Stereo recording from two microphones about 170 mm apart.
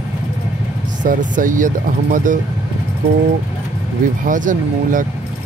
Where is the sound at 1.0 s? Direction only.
50° right (ahead or behind).